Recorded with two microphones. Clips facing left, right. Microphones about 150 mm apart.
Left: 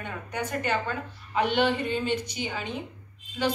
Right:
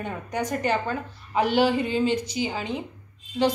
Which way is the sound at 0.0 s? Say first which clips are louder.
Right 4 dB; 40° right (ahead or behind).